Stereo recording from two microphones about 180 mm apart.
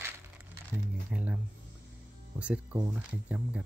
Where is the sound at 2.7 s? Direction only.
15° right (ahead or behind).